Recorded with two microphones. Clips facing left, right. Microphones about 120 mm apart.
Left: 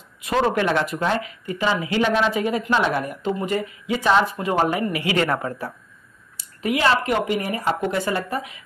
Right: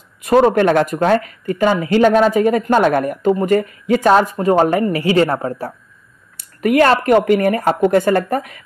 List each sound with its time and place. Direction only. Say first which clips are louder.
0.2 s a woman's voice: right 9 dB; 45° right (ahead or behind); by 5.7 s 30° right (ahead or behind)
6.3 s speech: right 10 dB; 55° right (ahead or behind)